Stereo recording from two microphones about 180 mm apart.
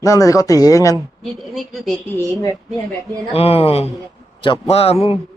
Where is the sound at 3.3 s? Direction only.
35° left (ahead or behind).